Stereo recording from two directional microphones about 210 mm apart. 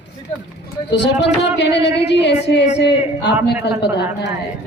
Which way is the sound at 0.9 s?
55° left (ahead or behind).